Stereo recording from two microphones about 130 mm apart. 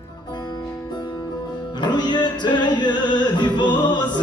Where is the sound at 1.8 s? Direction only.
35° left (ahead or behind).